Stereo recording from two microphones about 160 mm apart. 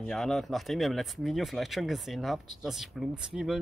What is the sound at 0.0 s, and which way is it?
Speech, 5° left (ahead or behind).